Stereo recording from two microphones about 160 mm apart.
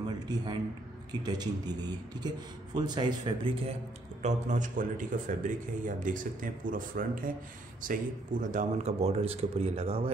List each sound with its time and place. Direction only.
0.3 s a man's voice: 25° right (ahead or behind)
4.2 s a man's voice: 50° right (ahead or behind)